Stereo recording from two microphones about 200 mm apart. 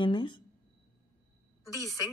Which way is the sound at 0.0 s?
25° left (ahead or behind).